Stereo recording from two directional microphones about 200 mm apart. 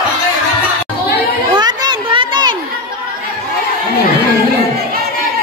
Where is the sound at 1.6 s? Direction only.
20° right (ahead or behind).